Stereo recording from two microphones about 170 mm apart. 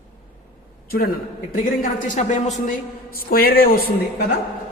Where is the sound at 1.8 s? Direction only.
45° left (ahead or behind).